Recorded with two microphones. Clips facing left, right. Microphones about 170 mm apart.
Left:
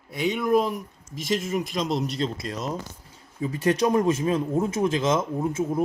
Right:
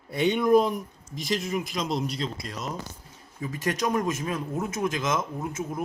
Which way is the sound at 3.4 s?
30° left (ahead or behind).